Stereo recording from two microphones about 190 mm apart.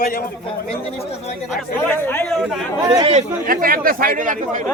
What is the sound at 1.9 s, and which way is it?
Speech, 10° left (ahead or behind).